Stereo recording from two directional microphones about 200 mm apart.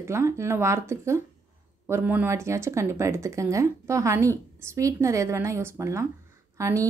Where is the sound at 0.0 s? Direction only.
15° right (ahead or behind).